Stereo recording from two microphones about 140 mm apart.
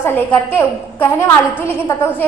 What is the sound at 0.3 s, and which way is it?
Speech, 15° left (ahead or behind).